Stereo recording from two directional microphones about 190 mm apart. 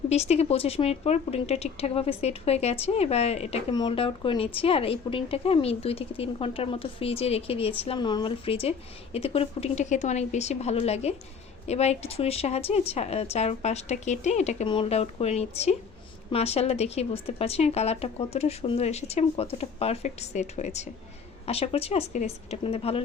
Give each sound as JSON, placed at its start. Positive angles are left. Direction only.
{"t": 0.1, "sound": "speech", "side_deg": 35}